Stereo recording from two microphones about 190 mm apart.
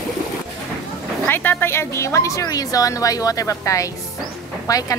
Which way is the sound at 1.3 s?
10° left (ahead or behind).